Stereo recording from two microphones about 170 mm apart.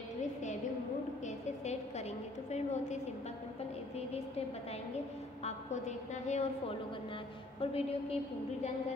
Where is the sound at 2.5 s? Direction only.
45° left (ahead or behind).